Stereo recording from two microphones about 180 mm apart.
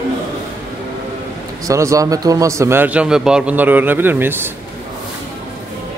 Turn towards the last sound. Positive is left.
turn(degrees=-10)  # may be behind; listen again after turning